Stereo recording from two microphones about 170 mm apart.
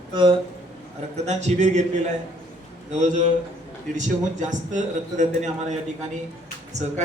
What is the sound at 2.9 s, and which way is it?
A man's voice, 45° right (ahead or behind).